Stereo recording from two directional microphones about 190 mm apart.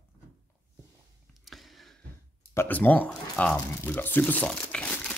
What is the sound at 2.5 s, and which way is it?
Speech, 10° left (ahead or behind).